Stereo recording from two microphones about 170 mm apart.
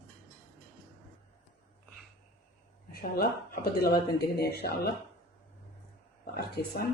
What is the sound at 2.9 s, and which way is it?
Speech, 60° left (ahead or behind).